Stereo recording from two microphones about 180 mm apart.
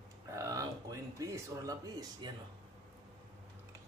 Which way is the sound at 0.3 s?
20° right (ahead or behind).